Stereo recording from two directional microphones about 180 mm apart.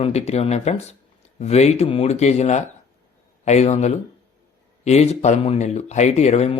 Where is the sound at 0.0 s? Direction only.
35° left (ahead or behind).